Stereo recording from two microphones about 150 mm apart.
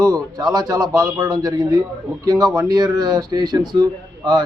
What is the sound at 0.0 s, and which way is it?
Speech, 25° right (ahead or behind).